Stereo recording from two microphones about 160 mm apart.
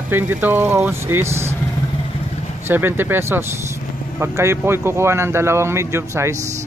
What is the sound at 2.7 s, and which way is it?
Speech, 15° right (ahead or behind).